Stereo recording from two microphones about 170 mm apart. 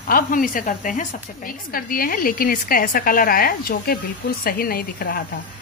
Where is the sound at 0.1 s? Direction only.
55° left (ahead or behind).